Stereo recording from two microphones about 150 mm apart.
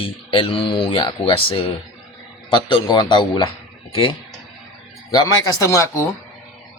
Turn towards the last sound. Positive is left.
turn(degrees=20)  # may be behind; listen again after turning